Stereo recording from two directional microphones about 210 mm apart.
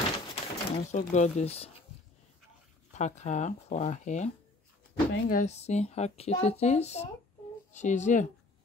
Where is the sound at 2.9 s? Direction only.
35° left (ahead or behind).